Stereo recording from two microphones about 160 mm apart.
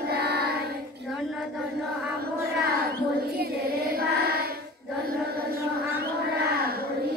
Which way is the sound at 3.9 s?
75° right (ahead or behind).